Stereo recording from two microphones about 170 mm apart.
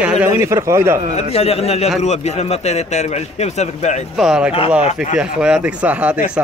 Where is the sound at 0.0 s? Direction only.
10° right (ahead or behind).